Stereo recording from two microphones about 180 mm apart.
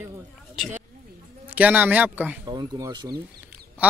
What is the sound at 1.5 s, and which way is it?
Speech, 10° right (ahead or behind).